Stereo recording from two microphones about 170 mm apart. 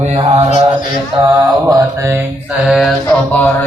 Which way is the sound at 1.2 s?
20° right (ahead or behind).